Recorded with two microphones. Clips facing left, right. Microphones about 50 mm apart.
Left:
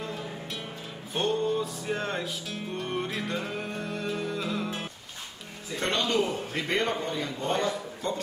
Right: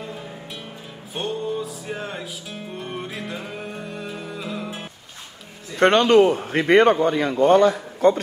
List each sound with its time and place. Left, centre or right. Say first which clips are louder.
1.1 s music: even; centre
5.8 s a man's voice: right 13 dB; right